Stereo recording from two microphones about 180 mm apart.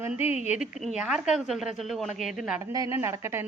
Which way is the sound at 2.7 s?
20° right (ahead or behind).